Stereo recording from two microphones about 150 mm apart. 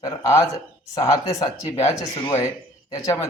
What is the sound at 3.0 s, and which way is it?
Speech, 20° left (ahead or behind).